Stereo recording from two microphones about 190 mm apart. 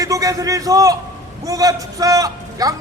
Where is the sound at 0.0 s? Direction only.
15° right (ahead or behind).